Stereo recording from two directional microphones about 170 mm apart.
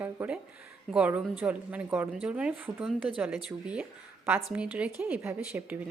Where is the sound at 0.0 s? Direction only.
10° right (ahead or behind).